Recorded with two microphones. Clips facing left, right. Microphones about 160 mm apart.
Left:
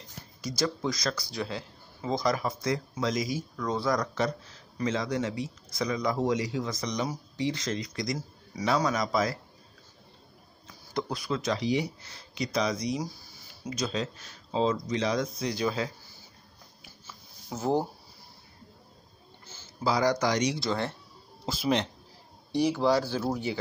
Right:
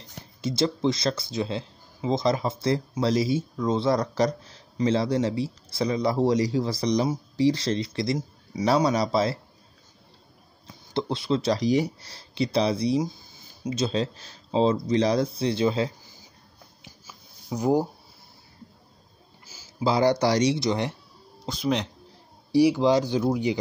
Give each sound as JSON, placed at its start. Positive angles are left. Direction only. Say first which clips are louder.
{"t": 0.4, "sound": "speech", "louder": "right 6 dB", "side_deg": -25}
{"t": 10.7, "sound": "speech", "louder": "right 4 dB", "side_deg": -25}
{"t": 17.0, "sound": "a sound", "louder": "even", "side_deg": -10}
{"t": 19.4, "sound": "a sound", "louder": "even", "side_deg": -10}
{"t": 19.8, "sound": "speech", "louder": "right 4 dB", "side_deg": -30}
{"t": 20.5, "sound": "speech", "louder": "right 4 dB", "side_deg": -20}
{"t": 21.5, "sound": "speech", "louder": "right 1 dB", "side_deg": 5}
{"t": 22.5, "sound": "speech", "louder": "right 5 dB", "side_deg": -10}